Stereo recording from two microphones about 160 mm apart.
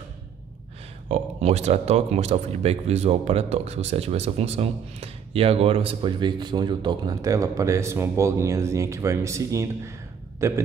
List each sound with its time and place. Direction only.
1.0 s speech: 40° right (ahead or behind); by 9.9 s 20° right (ahead or behind)
10.4 s hiccup: 15° right (ahead or behind)